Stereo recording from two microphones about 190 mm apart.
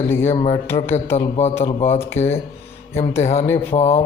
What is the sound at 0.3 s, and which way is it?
A man's voice, 35° left (ahead or behind).